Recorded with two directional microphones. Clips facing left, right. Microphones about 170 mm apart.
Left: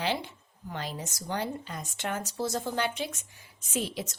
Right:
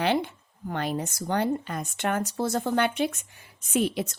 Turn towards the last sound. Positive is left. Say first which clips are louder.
# right 7 dB
turn(degrees=-60)  # may be behind; listen again after turning